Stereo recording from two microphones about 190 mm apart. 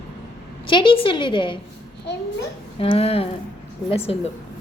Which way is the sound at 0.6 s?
25° left (ahead or behind).